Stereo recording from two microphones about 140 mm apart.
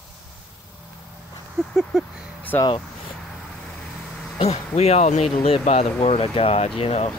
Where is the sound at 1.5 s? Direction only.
Centre (ahead or behind).